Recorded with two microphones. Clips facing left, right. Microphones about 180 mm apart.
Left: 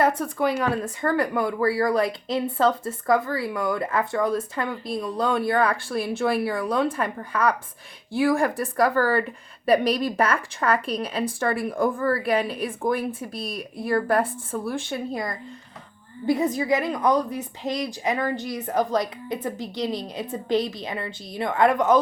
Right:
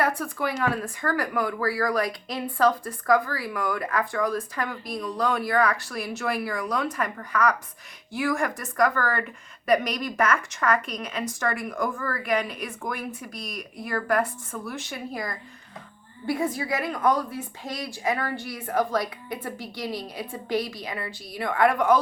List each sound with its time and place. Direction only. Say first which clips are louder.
0.0 s a woman's voice: left 4 dB; 25° left (ahead or behind)